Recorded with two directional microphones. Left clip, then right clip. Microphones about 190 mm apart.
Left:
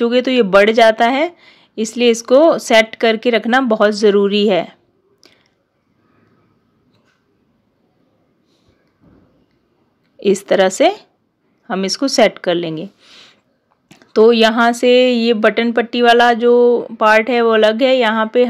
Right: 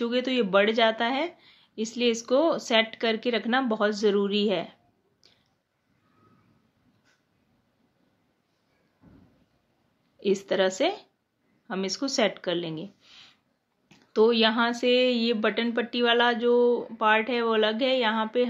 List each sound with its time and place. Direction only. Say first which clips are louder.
0.0 s speech: left 13 dB; 40° left (ahead or behind)
5.2 s a sound: left 12 dB; 45° left (ahead or behind)
10.2 s speech: left 12 dB; 45° left (ahead or behind)